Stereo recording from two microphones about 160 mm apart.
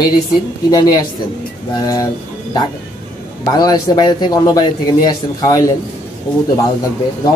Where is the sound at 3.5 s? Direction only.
25° left (ahead or behind).